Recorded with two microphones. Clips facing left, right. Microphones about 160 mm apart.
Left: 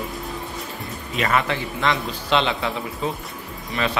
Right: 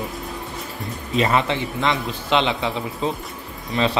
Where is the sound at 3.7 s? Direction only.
25° right (ahead or behind).